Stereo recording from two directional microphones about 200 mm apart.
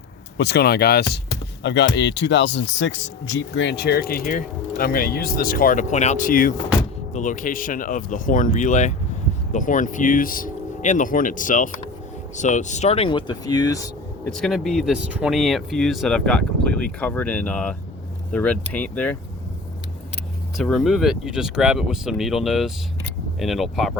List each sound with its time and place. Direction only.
0.3 s speech: 55° left (ahead or behind); by 13.8 s 20° left (ahead or behind)
14.3 s speech: centre (ahead or behind)
20.6 s speech: centre (ahead or behind)